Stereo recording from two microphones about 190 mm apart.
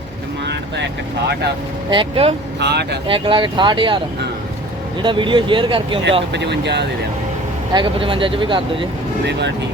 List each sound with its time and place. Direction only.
1.9 s speech: 25° right (ahead or behind)
2.6 s speech: 60° right (ahead or behind)
3.1 s speech: 25° right (ahead or behind)
5.0 s speech: 25° right (ahead or behind)
6.3 s speech: 65° right (ahead or behind)
7.7 s speech: 25° right (ahead or behind)